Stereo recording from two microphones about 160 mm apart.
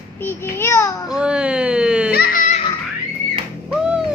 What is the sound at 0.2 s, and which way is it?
Speech, 15° left (ahead or behind).